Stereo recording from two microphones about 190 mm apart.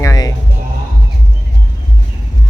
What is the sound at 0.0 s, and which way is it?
Music, 20° left (ahead or behind).